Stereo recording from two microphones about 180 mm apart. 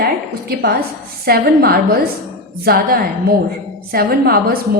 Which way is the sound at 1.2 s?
55° right (ahead or behind).